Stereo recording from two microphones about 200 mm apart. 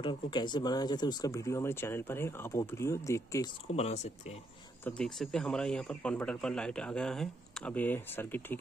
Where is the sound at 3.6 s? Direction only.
30° left (ahead or behind).